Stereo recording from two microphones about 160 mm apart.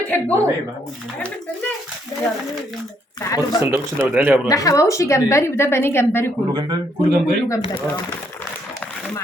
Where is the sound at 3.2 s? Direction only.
20° left (ahead or behind).